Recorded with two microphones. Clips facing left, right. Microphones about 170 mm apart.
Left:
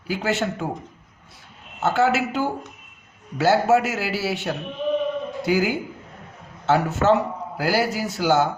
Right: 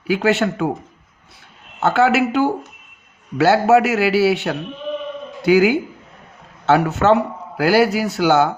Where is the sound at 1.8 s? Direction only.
70° right (ahead or behind).